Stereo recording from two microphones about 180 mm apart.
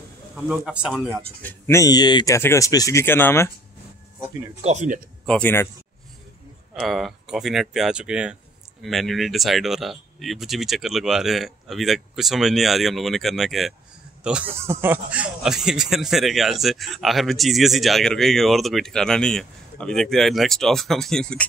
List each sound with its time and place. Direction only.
0.5 s speech: 5° right (ahead or behind)
1.4 s speech: 10° left (ahead or behind)
4.6 s speech: 40° right (ahead or behind)
5.2 s speech: 5° left (ahead or behind)
6.7 s speech: centre (ahead or behind)